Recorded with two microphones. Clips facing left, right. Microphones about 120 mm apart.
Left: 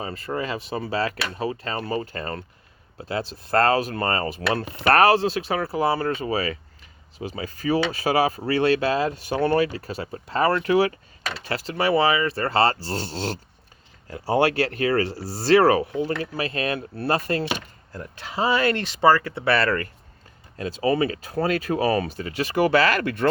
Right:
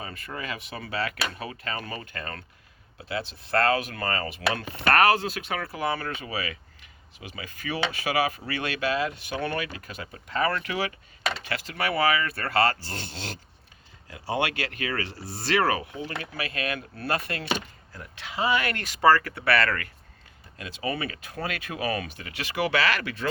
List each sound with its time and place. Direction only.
0.0 s speech: 30° left (ahead or behind); by 23.3 s 50° left (ahead or behind)